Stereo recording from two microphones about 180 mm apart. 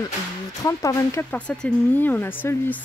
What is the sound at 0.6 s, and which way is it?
Speech, 20° left (ahead or behind).